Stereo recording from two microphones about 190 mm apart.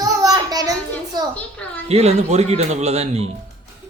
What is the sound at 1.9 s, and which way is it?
Speech, 35° right (ahead or behind).